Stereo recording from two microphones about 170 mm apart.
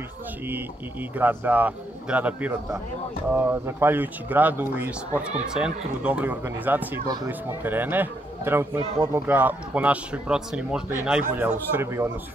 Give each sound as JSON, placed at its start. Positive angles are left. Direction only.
{"t": 1.1, "sound": "a man's voice", "side_deg": -10}
{"t": 8.7, "sound": "speech", "side_deg": -25}
{"t": 9.2, "sound": "a man's voice", "side_deg": -10}